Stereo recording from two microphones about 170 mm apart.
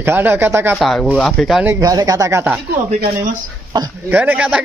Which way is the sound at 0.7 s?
5° left (ahead or behind).